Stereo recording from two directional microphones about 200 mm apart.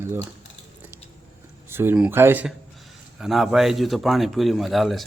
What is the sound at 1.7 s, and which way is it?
A man's voice, 10° right (ahead or behind).